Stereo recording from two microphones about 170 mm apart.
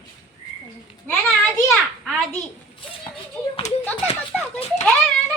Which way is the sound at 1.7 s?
Centre (ahead or behind).